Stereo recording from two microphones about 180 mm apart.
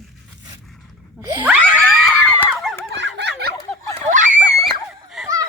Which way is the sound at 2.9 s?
80° right.